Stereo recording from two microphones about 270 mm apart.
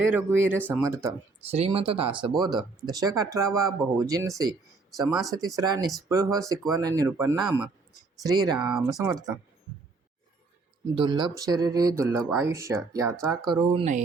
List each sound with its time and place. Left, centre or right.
0.0 s speech: centre
1.4 s speech: right
5.1 s speech: centre
5.4 s speech: centre
10.9 s speech: centre